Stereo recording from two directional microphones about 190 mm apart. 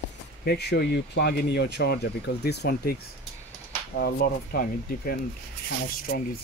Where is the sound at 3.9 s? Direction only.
55° left (ahead or behind).